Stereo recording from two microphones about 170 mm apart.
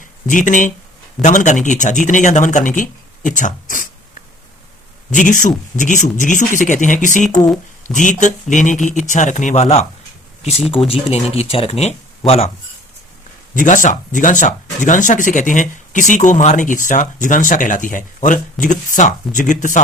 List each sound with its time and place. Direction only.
0.0 s speech: 50° left (ahead or behind)
5.1 s speech: 50° left (ahead or behind)
11.1 s speech: 35° left (ahead or behind)
13.5 s speech: 50° left (ahead or behind)